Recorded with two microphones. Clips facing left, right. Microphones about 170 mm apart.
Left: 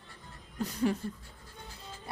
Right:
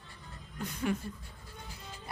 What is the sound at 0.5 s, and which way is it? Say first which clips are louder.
Speech: left 3 dB; 35° left (ahead or behind).